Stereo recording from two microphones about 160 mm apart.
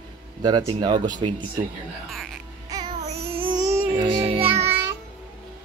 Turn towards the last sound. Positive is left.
turn(degrees=-15)  # may be behind; listen again after turning